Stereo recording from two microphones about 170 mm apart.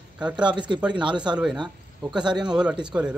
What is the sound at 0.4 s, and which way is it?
Speech, 25° right (ahead or behind).